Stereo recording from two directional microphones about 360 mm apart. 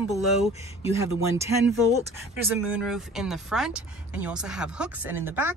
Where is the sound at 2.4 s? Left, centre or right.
Centre.